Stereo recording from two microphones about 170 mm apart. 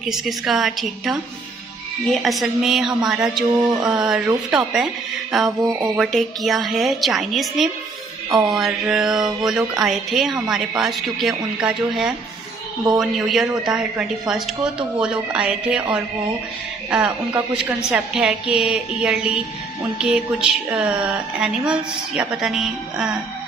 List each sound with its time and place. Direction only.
0.0 s mantra: centre (ahead or behind)
2.2 s mantra: centre (ahead or behind)
3.5 s music: 25° right (ahead or behind)
3.9 s mantra: 5° right (ahead or behind)